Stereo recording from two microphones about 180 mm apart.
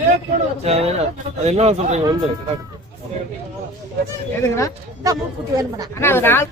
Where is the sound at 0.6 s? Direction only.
35° right (ahead or behind).